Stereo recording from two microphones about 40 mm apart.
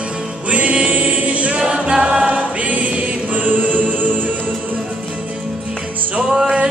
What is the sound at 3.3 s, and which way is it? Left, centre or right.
Chant, right.